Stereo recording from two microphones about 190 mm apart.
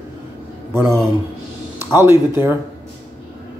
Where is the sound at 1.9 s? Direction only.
15° right (ahead or behind).